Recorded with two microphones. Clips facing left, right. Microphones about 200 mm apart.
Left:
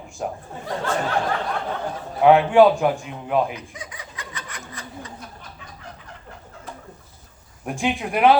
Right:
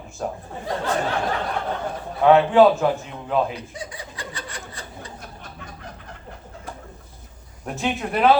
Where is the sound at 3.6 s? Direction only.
35° right (ahead or behind).